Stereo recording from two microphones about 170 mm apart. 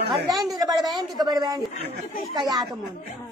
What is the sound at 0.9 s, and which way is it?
Child singing, 25° right (ahead or behind).